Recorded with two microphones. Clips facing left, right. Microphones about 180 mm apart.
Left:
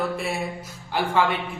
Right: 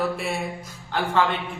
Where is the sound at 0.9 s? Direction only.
10° left (ahead or behind).